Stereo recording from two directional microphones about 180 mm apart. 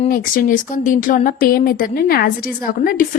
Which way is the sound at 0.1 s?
50° left (ahead or behind).